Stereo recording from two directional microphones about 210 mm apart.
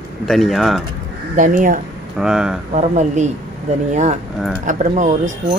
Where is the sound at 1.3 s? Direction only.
40° right (ahead or behind).